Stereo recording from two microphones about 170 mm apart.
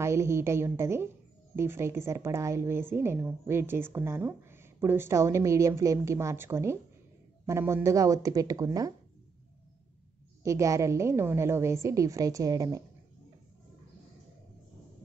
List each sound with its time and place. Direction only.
0.0 s a woman's voice: 15° right (ahead or behind)
10.4 s a woman's voice: 20° right (ahead or behind)